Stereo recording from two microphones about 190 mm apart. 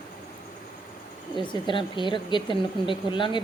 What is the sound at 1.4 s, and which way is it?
Speech, 25° left (ahead or behind).